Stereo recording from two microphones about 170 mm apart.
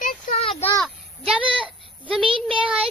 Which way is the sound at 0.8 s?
5° right (ahead or behind).